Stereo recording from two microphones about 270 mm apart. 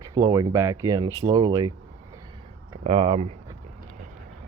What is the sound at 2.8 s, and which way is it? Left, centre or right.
Speech, right.